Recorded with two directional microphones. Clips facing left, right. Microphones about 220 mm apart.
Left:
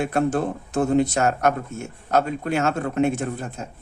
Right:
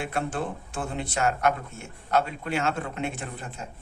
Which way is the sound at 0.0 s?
40° left (ahead or behind).